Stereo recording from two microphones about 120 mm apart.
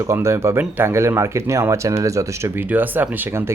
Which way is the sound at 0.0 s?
25° right (ahead or behind).